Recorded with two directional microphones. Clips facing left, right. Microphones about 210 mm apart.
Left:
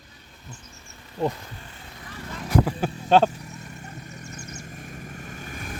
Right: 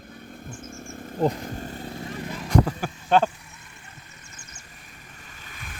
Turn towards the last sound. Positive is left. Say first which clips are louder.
# left 9 dB
turn(degrees=45)  # may be behind; listen again after turning